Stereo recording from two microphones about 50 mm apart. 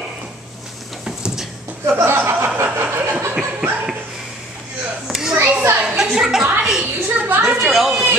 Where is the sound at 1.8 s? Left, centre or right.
Right.